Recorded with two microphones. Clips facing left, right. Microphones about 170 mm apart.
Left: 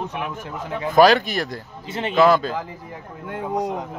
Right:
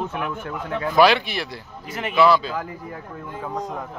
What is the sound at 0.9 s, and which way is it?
Speech, 45° left (ahead or behind).